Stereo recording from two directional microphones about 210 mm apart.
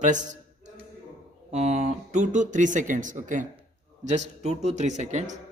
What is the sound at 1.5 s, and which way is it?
Speech, 35° right (ahead or behind).